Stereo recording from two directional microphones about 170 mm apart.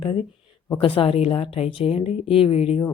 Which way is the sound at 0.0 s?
30° left (ahead or behind).